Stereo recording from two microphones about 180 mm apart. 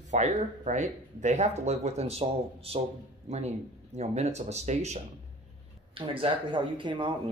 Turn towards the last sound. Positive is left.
turn(degrees=-25)  # may be behind; listen again after turning